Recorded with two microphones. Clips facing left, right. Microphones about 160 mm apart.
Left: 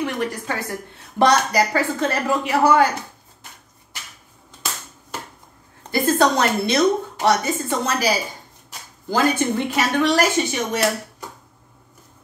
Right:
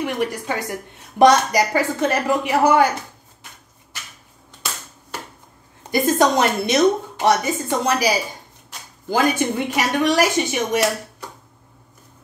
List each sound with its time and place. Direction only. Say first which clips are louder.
0.0 s speech: right 1 dB; 15° right (ahead or behind)
5.9 s speech: right 1 dB; 15° right (ahead or behind)
9.1 s speech: even; 15° right (ahead or behind)